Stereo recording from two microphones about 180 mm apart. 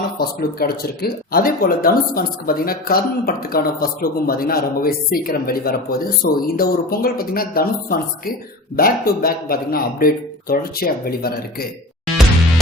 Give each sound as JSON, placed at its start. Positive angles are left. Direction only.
{"t": 0.2, "sound": "speech", "side_deg": 60}